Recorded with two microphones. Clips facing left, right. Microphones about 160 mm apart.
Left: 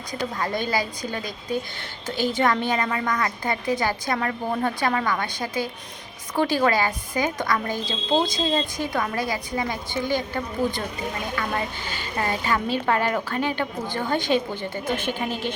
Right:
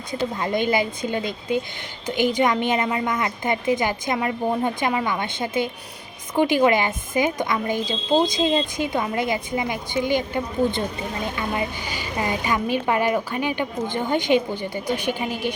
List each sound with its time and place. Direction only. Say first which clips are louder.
0.1 s a woman's voice: right 3 dB; 25° right (ahead or behind)